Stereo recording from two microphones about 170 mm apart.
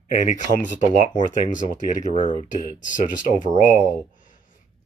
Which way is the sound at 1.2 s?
45° left (ahead or behind).